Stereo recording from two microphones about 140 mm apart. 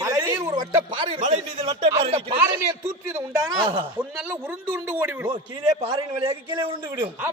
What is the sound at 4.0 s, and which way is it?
Speech, 15° right (ahead or behind).